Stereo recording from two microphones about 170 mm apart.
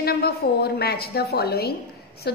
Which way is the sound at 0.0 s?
70° left (ahead or behind).